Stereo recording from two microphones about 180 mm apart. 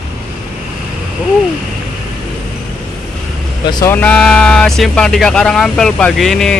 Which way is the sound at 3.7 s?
25° left (ahead or behind).